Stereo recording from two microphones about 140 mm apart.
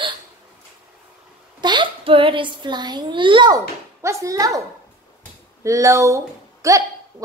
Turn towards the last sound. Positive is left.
turn(degrees=-20)  # may be behind; listen again after turning